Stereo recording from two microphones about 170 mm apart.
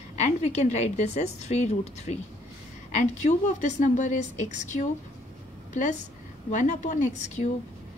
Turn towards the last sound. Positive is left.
turn(degrees=45)  # may be behind; listen again after turning